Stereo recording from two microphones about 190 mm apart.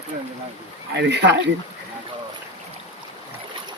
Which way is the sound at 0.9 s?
65° right (ahead or behind).